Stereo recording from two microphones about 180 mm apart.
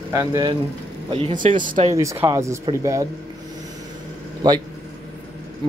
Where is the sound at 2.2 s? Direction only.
15° right (ahead or behind).